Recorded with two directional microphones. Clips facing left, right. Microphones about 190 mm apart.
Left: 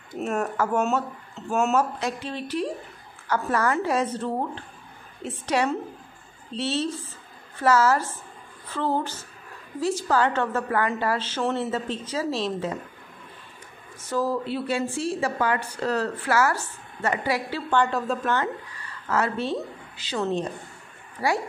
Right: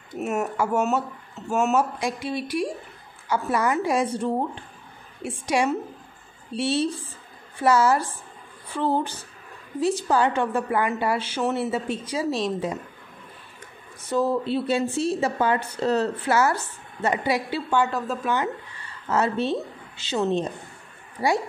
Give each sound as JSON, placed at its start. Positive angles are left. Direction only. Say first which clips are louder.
{"t": 0.2, "sound": "a woman's voice", "louder": "right 1 dB", "side_deg": -5}
{"t": 14.0, "sound": "a woman's voice", "louder": "right 3 dB", "side_deg": -20}
{"t": 19.0, "sound": "a woman's voice", "louder": "right 2 dB", "side_deg": -20}